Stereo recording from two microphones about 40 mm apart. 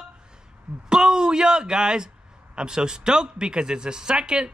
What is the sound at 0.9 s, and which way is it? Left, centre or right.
A man's voice, centre.